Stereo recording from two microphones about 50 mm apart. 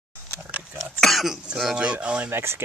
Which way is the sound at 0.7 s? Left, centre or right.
Centre.